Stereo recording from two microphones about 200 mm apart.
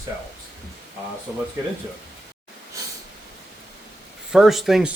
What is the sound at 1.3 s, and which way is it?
Speech, 10° right (ahead or behind).